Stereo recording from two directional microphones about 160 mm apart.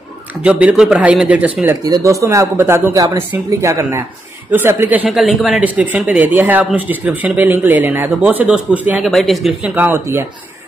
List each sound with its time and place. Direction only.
0.4 s speech: 10° right (ahead or behind)
5.0 s speech: centre (ahead or behind)
9.8 s speech: 15° right (ahead or behind)